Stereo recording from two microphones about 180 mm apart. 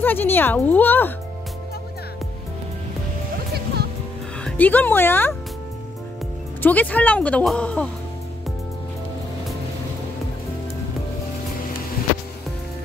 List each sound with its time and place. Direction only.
0.0 s speech: 10° left (ahead or behind)
3.5 s music: 65° right (ahead or behind)
4.5 s speech: 10° left (ahead or behind)
6.6 s speech: 10° left (ahead or behind)